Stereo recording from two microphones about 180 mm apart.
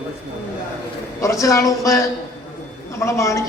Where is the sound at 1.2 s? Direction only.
15° left (ahead or behind).